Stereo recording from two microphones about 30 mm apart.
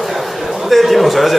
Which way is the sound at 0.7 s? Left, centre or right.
Centre.